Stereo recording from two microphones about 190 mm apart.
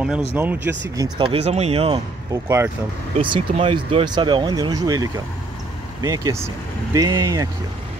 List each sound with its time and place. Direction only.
0.3 s speech: 10° right (ahead or behind); by 2.0 s 30° right (ahead or behind)
2.4 s speech: 15° right (ahead or behind)
3.2 s speech: 25° right (ahead or behind)